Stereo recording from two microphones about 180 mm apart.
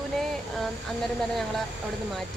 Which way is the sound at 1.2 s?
Centre (ahead or behind).